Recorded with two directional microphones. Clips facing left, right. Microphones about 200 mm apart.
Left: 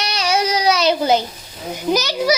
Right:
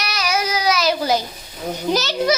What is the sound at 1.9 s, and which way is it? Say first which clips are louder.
Speech: left 1 dB; 15° left (ahead or behind).